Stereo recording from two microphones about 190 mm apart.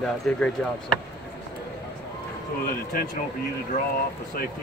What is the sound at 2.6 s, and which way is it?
Speech, 50° left (ahead or behind).